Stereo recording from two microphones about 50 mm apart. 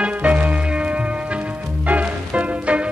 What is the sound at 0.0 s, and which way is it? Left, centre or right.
Music, right.